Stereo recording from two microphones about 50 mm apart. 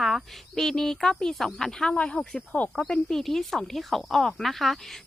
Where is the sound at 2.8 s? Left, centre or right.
Centre.